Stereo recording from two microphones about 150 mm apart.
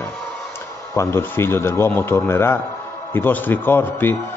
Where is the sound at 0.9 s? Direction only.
15° left (ahead or behind).